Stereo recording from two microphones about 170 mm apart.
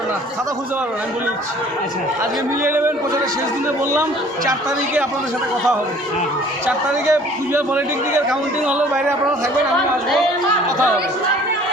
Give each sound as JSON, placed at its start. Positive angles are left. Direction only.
{"t": 2.6, "sound": "a man's voice", "side_deg": -10}
{"t": 6.7, "sound": "a man's voice", "side_deg": -15}